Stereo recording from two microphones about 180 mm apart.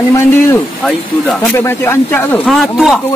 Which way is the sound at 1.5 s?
15° left (ahead or behind).